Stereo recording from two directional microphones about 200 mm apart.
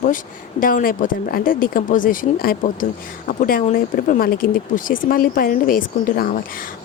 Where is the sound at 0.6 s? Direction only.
45° left (ahead or behind).